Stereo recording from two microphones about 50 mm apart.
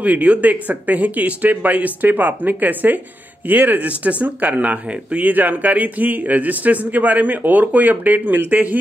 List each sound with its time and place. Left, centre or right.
0.0 s speech: right